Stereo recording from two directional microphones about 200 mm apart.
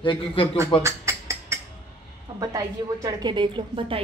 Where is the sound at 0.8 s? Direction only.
15° right (ahead or behind).